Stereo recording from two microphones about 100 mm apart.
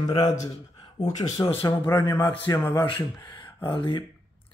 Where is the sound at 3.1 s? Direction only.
40° left (ahead or behind).